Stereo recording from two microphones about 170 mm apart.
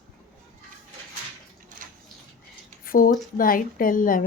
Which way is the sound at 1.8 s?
50° right (ahead or behind).